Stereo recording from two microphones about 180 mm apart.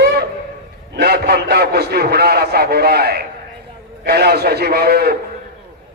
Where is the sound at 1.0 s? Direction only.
65° right (ahead or behind).